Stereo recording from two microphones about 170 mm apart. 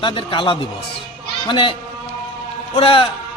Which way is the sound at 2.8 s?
35° left (ahead or behind).